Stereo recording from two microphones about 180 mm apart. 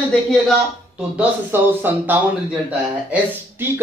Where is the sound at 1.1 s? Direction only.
10° right (ahead or behind).